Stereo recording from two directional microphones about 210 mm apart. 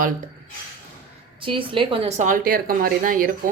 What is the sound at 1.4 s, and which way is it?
A woman's voice, 25° right (ahead or behind).